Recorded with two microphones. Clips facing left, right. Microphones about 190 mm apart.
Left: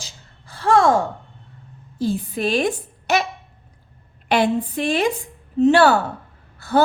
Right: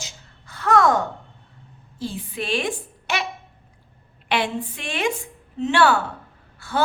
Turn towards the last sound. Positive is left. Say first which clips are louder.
# left 8 dB
turn(degrees=40)  # may be behind; listen again after turning